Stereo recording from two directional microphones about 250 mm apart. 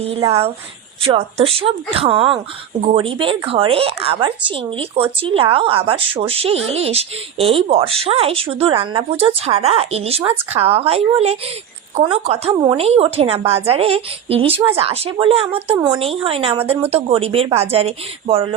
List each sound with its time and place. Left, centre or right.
0.0 s speech: right